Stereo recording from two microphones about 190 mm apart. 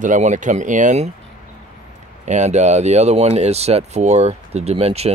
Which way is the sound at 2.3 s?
35° right (ahead or behind).